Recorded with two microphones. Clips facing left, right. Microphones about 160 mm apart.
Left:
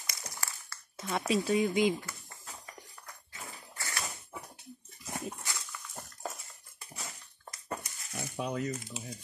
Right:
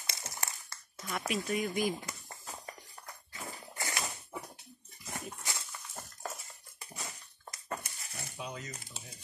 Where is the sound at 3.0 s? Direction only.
30° right (ahead or behind).